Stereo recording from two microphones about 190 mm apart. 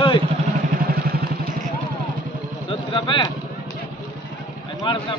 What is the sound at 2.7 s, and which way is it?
Speech, 25° left (ahead or behind).